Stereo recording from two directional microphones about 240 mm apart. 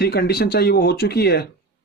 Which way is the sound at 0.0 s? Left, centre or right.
Left.